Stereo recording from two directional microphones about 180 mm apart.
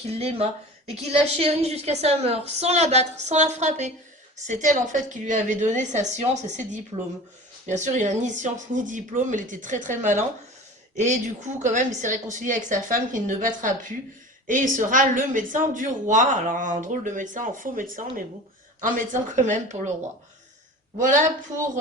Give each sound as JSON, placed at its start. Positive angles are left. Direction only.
{"t": 0.1, "sound": "a woman's voice", "side_deg": -35}
{"t": 21.0, "sound": "a woman's voice", "side_deg": -45}